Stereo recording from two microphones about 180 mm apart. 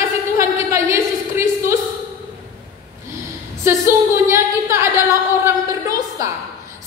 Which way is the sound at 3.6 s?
15° right (ahead or behind).